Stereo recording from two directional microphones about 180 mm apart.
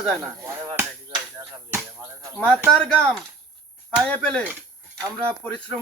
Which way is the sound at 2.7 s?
5° left (ahead or behind).